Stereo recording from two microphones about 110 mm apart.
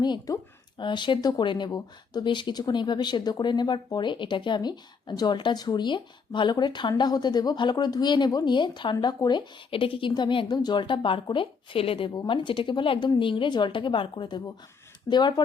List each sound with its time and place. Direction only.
0.0 s speech: 40° left (ahead or behind)